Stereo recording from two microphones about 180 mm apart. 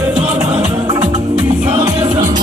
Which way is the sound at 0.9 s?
25° right (ahead or behind).